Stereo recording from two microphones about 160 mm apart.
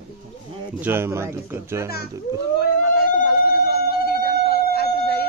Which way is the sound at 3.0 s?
70° left (ahead or behind).